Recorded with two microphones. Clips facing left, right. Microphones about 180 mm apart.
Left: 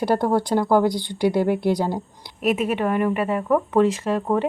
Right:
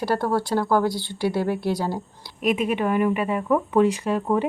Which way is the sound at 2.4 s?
5° left (ahead or behind).